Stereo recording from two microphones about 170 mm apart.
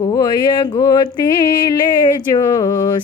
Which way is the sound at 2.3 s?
25° left (ahead or behind).